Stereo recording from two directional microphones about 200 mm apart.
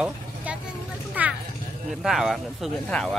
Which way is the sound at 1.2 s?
10° right (ahead or behind).